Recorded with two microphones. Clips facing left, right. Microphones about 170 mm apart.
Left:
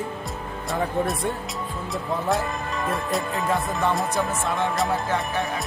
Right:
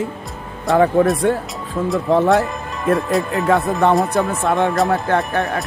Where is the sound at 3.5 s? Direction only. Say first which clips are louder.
Right 9 dB; 65° right (ahead or behind).